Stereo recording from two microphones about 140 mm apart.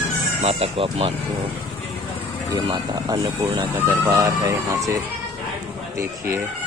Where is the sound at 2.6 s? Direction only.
30° right (ahead or behind).